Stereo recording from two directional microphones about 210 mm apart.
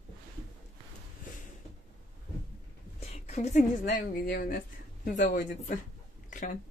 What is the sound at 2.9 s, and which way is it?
A woman's voice, 30° left (ahead or behind).